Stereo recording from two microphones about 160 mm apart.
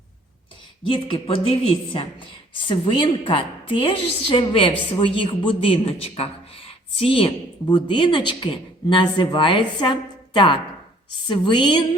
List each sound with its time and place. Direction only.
0.9 s a man's voice: 30° left (ahead or behind)